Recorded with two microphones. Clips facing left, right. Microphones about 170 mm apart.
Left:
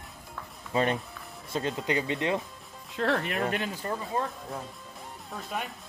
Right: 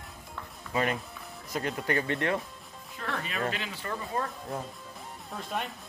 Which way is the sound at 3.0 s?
65° left (ahead or behind).